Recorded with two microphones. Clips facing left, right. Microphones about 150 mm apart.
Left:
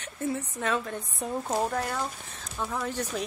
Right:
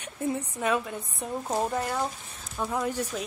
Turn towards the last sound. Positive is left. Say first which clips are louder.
# right 2 dB
turn(degrees=-10)  # may be behind; listen again after turning